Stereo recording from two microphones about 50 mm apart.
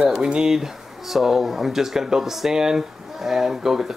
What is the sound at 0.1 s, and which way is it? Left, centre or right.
Speech, centre.